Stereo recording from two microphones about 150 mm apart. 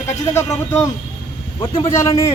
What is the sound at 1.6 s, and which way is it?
Speech, 35° left (ahead or behind).